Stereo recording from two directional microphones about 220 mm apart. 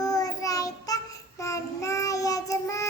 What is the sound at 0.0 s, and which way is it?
Child singing, 15° left (ahead or behind).